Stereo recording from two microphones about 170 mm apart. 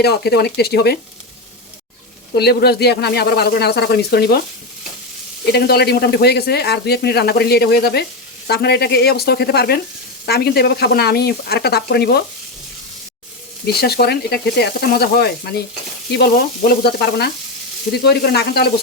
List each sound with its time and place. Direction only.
0.0 s speech: 70° left (ahead or behind)
2.3 s speech: 70° left (ahead or behind)
5.5 s speech: 70° left (ahead or behind)
13.7 s speech: 70° left (ahead or behind)